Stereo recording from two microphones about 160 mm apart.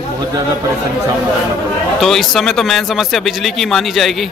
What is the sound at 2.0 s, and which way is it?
Speech, centre (ahead or behind).